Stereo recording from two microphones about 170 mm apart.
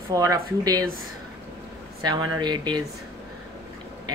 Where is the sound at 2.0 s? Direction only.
25° right (ahead or behind).